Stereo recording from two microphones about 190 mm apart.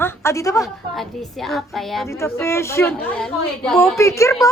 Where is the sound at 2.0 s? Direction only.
15° left (ahead or behind).